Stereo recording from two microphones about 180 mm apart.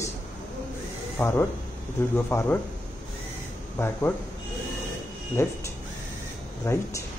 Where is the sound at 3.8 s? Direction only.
15° left (ahead or behind).